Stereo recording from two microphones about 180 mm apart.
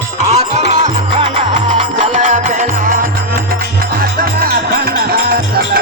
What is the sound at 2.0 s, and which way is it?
Music, 45° right (ahead or behind).